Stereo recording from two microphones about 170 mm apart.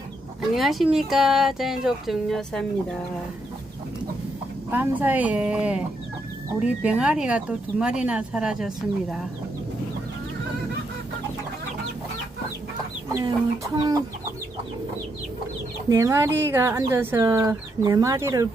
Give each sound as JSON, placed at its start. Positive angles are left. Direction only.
{"t": 0.5, "sound": "speech", "side_deg": 0}
{"t": 4.7, "sound": "speech", "side_deg": -10}
{"t": 13.1, "sound": "chicken", "side_deg": -20}
{"t": 15.9, "sound": "speech", "side_deg": -15}